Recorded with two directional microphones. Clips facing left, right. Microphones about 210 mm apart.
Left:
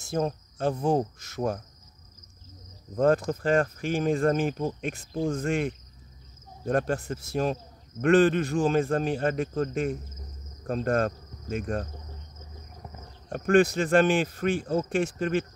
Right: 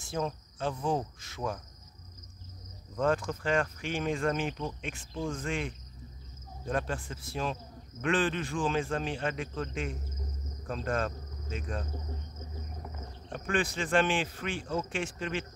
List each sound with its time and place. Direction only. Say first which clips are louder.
0.0 s speech: left 6 dB; 40° left (ahead or behind)
3.0 s speech: left 6 dB; 40° left (ahead or behind)
13.3 s speech: left 11 dB; 45° left (ahead or behind)